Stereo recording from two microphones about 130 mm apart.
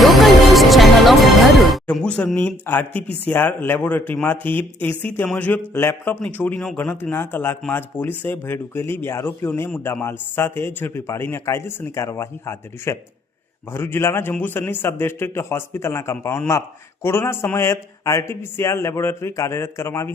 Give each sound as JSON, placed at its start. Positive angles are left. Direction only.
{"t": 0.0, "sound": "music", "side_deg": 0}
{"t": 3.2, "sound": "a man's voice", "side_deg": 15}